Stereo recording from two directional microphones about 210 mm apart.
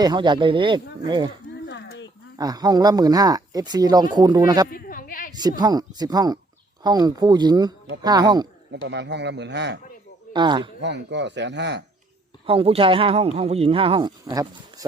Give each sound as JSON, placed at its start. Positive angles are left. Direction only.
{"t": 0.0, "sound": "speech", "side_deg": -20}
{"t": 1.6, "sound": "a sound", "side_deg": 55}
{"t": 2.4, "sound": "speech", "side_deg": -15}
{"t": 4.7, "sound": "a sound", "side_deg": 40}
{"t": 5.3, "sound": "speech", "side_deg": -20}
{"t": 8.7, "sound": "speech", "side_deg": -55}
{"t": 10.3, "sound": "speech", "side_deg": -20}
{"t": 10.8, "sound": "speech", "side_deg": -55}
{"t": 12.5, "sound": "speech", "side_deg": -25}